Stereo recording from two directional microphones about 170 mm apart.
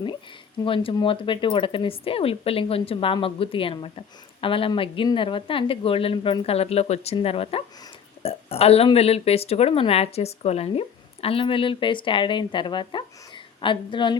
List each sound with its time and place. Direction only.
0.6 s speech: 30° left (ahead or behind)